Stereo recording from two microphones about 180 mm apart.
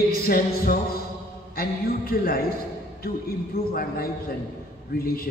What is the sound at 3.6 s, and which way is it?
Speech, 35° left (ahead or behind).